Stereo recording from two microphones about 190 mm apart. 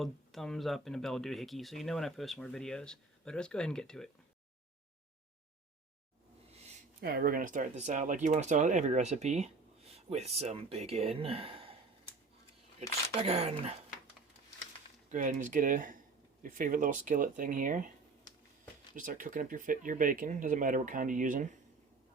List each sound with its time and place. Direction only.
0.0 s speech: centre (ahead or behind)
7.0 s speech: 50° right (ahead or behind); by 11.7 s 30° right (ahead or behind)
13.1 s speech: 35° right (ahead or behind)
15.1 s speech: 45° right (ahead or behind)
18.9 s speech: 45° right (ahead or behind)